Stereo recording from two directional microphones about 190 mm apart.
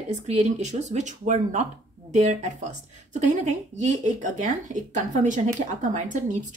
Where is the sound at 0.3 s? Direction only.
35° right (ahead or behind).